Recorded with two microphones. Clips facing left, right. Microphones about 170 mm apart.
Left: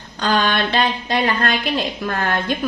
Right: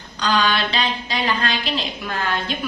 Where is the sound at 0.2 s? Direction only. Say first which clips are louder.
Left 2 dB; 50° left (ahead or behind).